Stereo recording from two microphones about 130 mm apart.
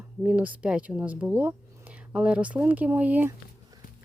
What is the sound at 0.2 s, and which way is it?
Speech, 10° right (ahead or behind).